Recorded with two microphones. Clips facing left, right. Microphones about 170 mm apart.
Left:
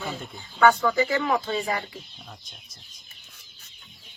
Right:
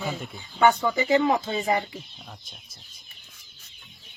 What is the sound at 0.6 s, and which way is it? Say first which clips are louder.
Speech: left 1 dB; 20° right (ahead or behind).